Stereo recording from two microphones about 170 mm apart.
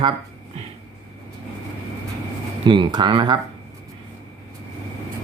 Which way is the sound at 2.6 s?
30° right (ahead or behind).